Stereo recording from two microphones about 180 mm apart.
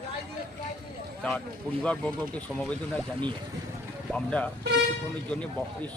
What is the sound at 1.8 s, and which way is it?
Speech, 5° left (ahead or behind).